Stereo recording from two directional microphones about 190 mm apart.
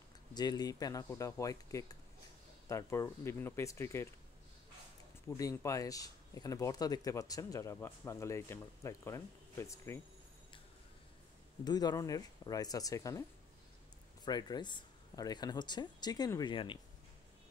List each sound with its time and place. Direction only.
0.3 s speech: 20° left (ahead or behind)
5.3 s speech: 15° left (ahead or behind)
11.6 s speech: 20° left (ahead or behind)
14.2 s speech: 20° left (ahead or behind)